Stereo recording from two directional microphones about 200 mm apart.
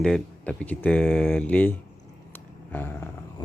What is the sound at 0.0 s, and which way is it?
Speech, 5° left (ahead or behind).